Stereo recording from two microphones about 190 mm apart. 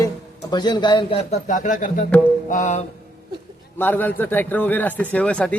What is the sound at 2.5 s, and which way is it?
Music, 40° left (ahead or behind).